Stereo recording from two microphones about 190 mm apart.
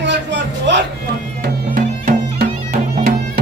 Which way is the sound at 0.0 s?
70° right (ahead or behind).